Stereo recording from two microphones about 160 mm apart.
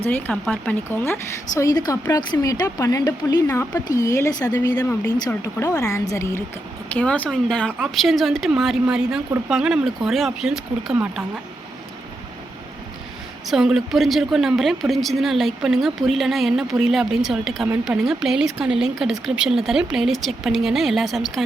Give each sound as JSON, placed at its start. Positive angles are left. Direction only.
{"t": 0.0, "sound": "speech", "side_deg": 10}
{"t": 13.5, "sound": "speech", "side_deg": 0}